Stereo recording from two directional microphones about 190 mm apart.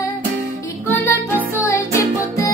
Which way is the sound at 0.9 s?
10° left (ahead or behind).